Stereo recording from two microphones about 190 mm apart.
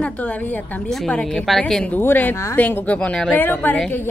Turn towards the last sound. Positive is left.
turn(degrees=10)  # may be behind; listen again after turning